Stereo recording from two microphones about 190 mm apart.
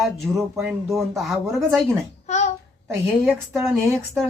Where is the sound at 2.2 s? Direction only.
40° left (ahead or behind).